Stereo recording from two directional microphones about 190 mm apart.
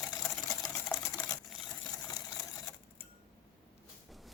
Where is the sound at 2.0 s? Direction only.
20° left (ahead or behind).